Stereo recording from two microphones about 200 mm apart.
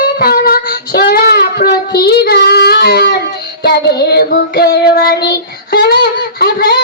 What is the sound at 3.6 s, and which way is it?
Child singing, 55° left (ahead or behind).